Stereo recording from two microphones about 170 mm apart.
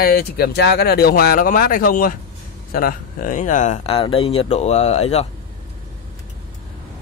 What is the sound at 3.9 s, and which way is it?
Speech, 30° left (ahead or behind).